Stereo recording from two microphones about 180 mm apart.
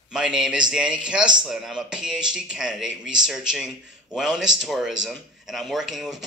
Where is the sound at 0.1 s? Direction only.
5° right (ahead or behind).